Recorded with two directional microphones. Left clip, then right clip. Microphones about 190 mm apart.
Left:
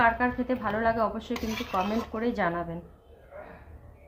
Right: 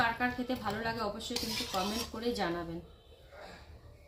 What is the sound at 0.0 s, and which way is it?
A woman's voice, 35° left (ahead or behind).